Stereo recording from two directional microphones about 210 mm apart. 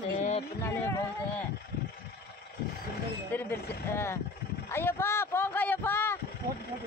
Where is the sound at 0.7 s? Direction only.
15° left (ahead or behind).